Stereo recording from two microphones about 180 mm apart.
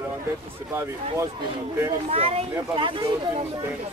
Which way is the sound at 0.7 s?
15° right (ahead or behind).